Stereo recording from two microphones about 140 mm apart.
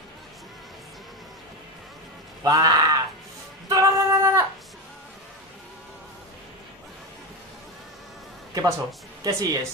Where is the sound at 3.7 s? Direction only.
25° right (ahead or behind).